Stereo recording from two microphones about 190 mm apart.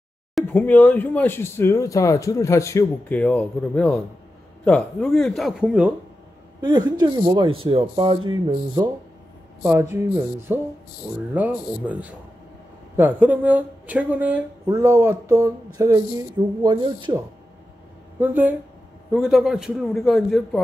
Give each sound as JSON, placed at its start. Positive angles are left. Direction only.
{"t": 0.3, "sound": "a man's voice", "side_deg": 5}
{"t": 6.6, "sound": "speech", "side_deg": -20}
{"t": 9.6, "sound": "speech", "side_deg": -15}
{"t": 18.2, "sound": "a man's voice", "side_deg": -10}